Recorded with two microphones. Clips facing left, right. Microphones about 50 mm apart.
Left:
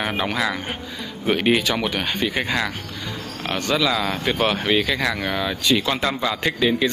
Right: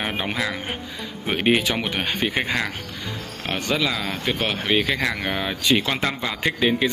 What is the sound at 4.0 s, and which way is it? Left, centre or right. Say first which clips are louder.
Speech: left 4 dB; centre.